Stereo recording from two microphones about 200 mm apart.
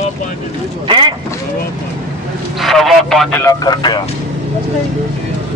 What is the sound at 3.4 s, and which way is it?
Speech, 20° left (ahead or behind).